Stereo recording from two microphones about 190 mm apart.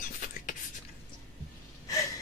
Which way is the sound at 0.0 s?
45° left (ahead or behind).